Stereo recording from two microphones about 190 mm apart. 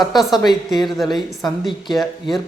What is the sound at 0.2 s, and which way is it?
A woman's voice, centre (ahead or behind).